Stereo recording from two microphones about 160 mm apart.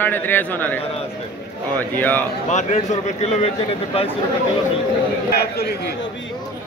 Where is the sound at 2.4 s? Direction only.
45° left (ahead or behind).